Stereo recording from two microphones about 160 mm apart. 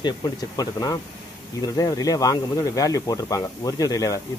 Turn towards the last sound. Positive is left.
turn(degrees=20)  # may be behind; listen again after turning